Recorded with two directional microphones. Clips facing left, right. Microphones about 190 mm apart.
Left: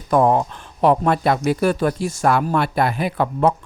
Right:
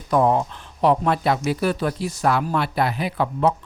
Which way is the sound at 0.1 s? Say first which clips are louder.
Left 2 dB; 50° left (ahead or behind).